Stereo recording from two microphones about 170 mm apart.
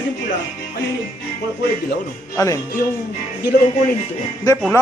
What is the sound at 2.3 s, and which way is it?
Speech, 20° left (ahead or behind).